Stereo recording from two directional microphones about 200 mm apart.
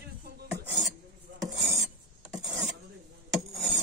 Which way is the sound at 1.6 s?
Centre (ahead or behind).